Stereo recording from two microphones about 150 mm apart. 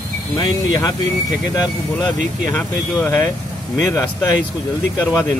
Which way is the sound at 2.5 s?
10° left (ahead or behind).